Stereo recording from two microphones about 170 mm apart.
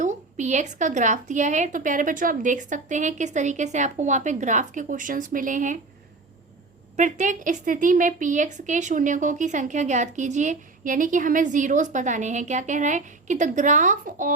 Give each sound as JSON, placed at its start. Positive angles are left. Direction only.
{"t": 0.0, "sound": "a woman's voice", "side_deg": -45}
{"t": 6.9, "sound": "a woman's voice", "side_deg": -45}